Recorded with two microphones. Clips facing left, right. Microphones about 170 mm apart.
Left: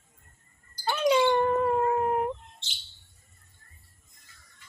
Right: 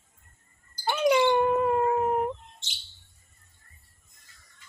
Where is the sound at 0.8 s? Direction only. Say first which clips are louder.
Right 1 dB; 10° right (ahead or behind).